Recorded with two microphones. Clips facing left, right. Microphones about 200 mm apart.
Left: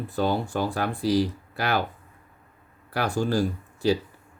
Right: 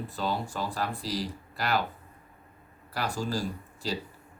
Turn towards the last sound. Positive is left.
turn(degrees=65)  # may be behind; listen again after turning